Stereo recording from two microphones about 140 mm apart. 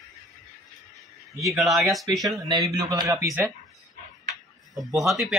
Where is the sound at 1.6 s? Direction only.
Centre (ahead or behind).